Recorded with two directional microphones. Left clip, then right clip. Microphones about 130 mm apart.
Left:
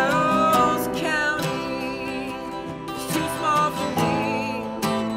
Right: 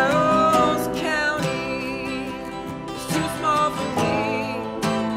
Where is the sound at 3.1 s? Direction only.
20° left (ahead or behind).